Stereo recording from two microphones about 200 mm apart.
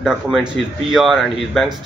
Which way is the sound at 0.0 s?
5° right (ahead or behind).